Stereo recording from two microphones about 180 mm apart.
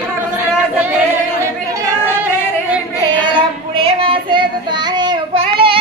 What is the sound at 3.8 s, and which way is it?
Child singing, 30° right (ahead or behind).